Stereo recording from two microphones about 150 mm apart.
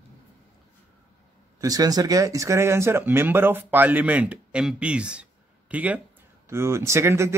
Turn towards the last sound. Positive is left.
turn(degrees=-20)  # may be behind; listen again after turning